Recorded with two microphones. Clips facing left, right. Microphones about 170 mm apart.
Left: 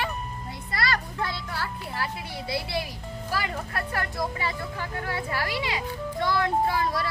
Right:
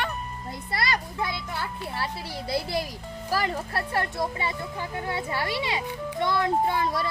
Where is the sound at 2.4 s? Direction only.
40° right (ahead or behind).